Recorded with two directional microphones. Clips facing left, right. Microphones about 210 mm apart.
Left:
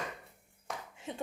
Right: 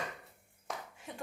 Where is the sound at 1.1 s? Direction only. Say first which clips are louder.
Left 6 dB; 20° left (ahead or behind).